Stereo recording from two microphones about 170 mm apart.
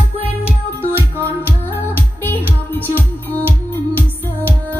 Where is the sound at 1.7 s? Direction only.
10° left (ahead or behind).